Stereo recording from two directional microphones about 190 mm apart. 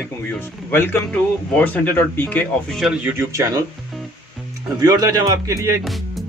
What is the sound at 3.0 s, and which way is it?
Speech, 15° right (ahead or behind).